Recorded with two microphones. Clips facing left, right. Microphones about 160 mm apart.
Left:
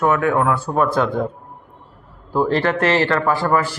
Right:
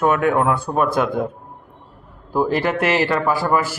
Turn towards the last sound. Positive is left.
turn(degrees=-10)  # may be behind; listen again after turning